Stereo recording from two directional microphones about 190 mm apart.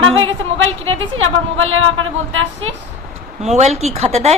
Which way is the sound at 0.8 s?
90° right.